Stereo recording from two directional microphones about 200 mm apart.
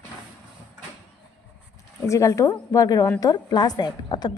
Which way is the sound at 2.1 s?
15° left (ahead or behind).